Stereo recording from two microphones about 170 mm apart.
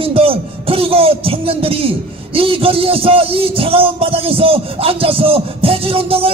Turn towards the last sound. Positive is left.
turn(degrees=-35)  # may be behind; listen again after turning